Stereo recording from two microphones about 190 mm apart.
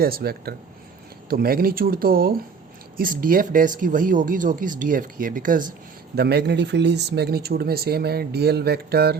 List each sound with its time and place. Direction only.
0.0 s speech: 55° right (ahead or behind)
6.1 s speech: 60° right (ahead or behind)